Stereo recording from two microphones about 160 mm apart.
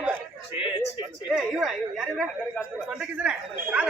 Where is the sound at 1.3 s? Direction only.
Centre (ahead or behind).